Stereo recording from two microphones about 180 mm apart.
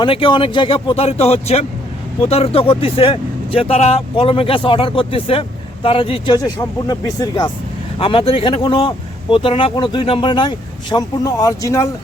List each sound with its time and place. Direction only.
0.0 s speech: 30° left (ahead or behind)